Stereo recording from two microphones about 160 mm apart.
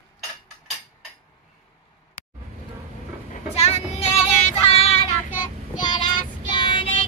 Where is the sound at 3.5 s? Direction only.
40° left (ahead or behind).